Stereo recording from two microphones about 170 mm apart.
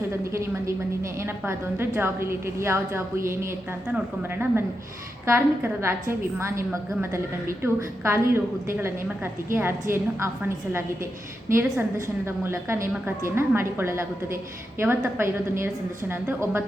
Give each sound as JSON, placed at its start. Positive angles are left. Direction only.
{"t": 1.2, "sound": "a woman's voice", "side_deg": -15}
{"t": 5.2, "sound": "a woman's voice", "side_deg": -15}